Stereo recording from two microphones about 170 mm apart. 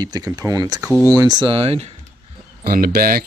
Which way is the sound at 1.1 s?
25° right (ahead or behind).